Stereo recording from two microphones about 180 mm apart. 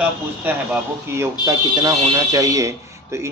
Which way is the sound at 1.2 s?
20° right (ahead or behind).